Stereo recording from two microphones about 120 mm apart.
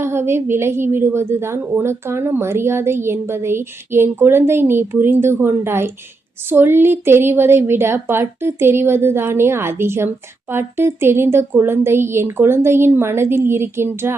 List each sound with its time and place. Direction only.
0.0 s a woman's voice: 20° right (ahead or behind)